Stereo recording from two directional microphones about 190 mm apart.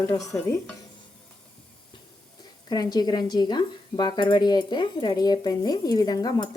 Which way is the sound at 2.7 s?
20° left (ahead or behind).